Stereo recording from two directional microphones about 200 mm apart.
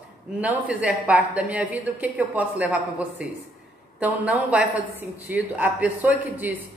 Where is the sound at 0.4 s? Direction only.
5° right (ahead or behind).